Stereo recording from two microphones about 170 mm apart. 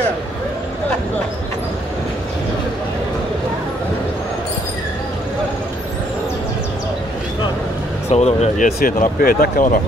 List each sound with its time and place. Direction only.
8.1 s speech: 40° left (ahead or behind)
8.7 s speech: 60° left (ahead or behind)